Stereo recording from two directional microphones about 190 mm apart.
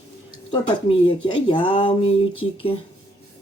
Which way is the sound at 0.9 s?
25° left (ahead or behind).